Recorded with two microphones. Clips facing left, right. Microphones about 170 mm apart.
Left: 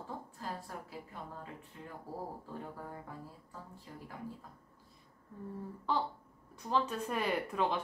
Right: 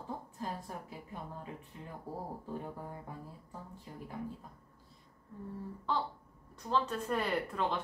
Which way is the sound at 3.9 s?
20° right (ahead or behind).